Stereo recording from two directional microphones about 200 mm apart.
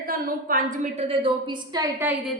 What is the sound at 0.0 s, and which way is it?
A woman's voice, 45° right (ahead or behind).